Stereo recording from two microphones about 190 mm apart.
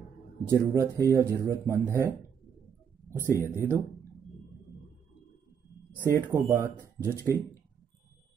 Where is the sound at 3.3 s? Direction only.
15° right (ahead or behind).